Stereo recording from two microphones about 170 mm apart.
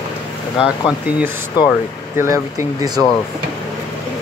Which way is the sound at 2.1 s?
15° right (ahead or behind).